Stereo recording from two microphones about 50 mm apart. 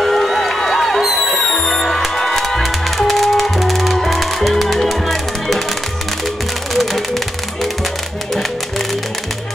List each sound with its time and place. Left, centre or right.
0.0 s music: centre
6.7 s music: centre